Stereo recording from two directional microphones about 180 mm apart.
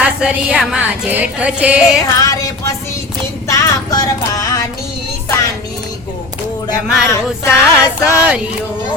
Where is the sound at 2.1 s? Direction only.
20° left (ahead or behind).